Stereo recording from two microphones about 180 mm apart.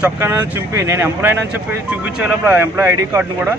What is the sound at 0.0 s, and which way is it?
Speech, 15° right (ahead or behind).